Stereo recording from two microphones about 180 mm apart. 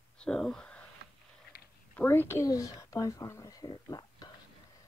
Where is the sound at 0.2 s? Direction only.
5° left (ahead or behind).